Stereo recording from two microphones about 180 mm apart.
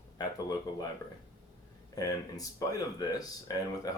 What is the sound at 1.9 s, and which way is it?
Speech, 20° left (ahead or behind).